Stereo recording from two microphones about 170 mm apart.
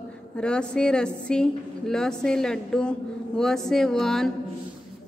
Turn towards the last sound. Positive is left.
turn(degrees=0)  # may be behind; listen again after turning